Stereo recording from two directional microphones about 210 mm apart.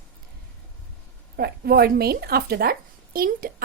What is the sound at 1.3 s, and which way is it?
A woman's voice, 45° right (ahead or behind).